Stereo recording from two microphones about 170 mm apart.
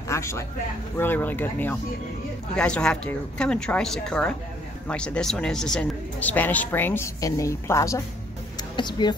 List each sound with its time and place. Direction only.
0.1 s speech: 15° left (ahead or behind)